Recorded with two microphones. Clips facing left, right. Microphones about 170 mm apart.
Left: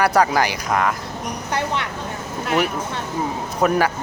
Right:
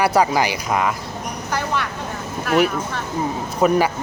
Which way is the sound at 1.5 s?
20° left (ahead or behind).